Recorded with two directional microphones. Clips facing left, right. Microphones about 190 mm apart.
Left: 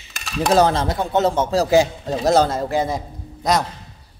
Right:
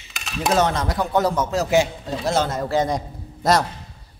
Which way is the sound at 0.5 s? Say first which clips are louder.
Left 4 dB; 30° left (ahead or behind).